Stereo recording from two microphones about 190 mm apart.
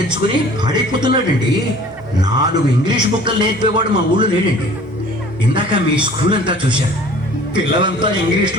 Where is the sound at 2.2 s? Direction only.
20° right (ahead or behind).